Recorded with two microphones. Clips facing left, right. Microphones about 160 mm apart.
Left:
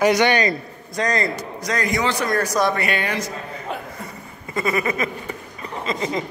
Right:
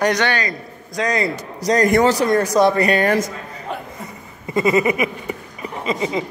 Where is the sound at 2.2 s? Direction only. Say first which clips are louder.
Right 5 dB; 25° right (ahead or behind); by 3.3 s 50° right (ahead or behind).